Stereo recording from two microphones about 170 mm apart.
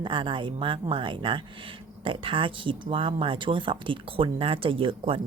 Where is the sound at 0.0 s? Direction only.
30° right (ahead or behind).